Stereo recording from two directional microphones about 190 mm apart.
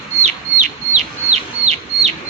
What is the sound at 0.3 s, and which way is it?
Chicken, 35° right (ahead or behind).